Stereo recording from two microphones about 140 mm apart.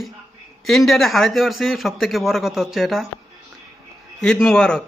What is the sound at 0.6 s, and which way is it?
Speech, centre (ahead or behind).